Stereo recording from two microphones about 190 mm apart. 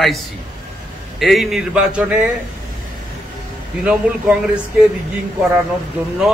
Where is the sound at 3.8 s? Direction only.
5° right (ahead or behind).